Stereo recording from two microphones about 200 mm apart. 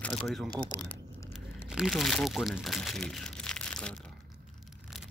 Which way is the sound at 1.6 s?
5° right (ahead or behind).